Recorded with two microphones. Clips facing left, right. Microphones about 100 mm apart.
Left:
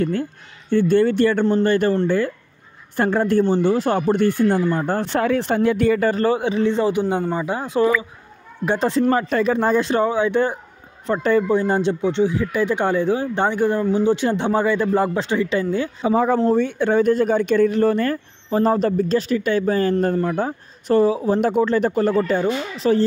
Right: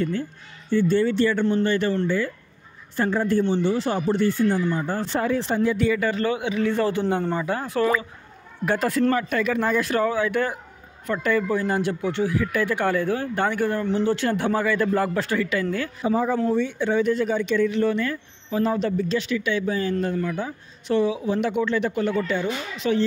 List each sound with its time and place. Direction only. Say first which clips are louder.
0.0 s speech: left 4 dB; 55° left (ahead or behind)
1.4 s speech: left 4 dB; 45° left (ahead or behind)
3.4 s speech: left 4 dB; 45° left (ahead or behind)
6.7 s a man's voice: left 3 dB; 15° left (ahead or behind)
16.0 s speech: left 4 dB; 80° left
16.5 s speech: left 4 dB; 55° left (ahead or behind)